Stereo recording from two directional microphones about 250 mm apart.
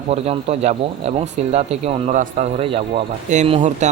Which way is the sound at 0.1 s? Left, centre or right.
Right.